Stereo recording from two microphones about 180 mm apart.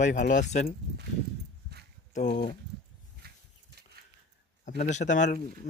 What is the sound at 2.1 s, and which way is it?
Speech, 40° left (ahead or behind).